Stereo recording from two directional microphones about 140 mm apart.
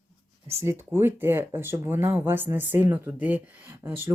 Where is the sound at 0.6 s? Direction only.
15° right (ahead or behind).